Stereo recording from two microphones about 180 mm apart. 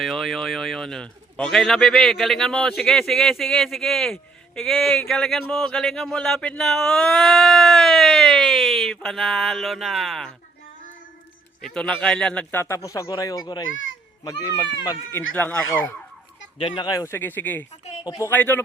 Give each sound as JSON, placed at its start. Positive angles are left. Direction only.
{"t": 0.0, "sound": "speech", "side_deg": 0}
{"t": 11.6, "sound": "speech", "side_deg": 5}
{"t": 13.7, "sound": "a child's voice", "side_deg": 90}
{"t": 14.3, "sound": "speech", "side_deg": 20}
{"t": 15.4, "sound": "speech", "side_deg": 10}
{"t": 16.6, "sound": "speech", "side_deg": 25}
{"t": 18.0, "sound": "speech", "side_deg": 25}
{"t": 18.3, "sound": "speech", "side_deg": 10}